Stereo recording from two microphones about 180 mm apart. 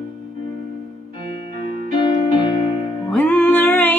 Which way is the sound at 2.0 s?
25° left (ahead or behind).